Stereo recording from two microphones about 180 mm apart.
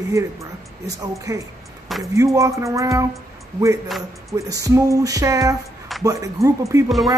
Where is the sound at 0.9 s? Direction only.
20° right (ahead or behind).